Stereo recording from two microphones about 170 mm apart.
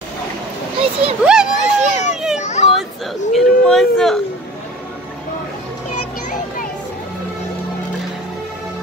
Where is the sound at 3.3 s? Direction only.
Centre (ahead or behind).